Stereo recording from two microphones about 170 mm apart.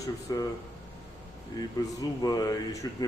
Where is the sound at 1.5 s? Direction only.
20° left (ahead or behind).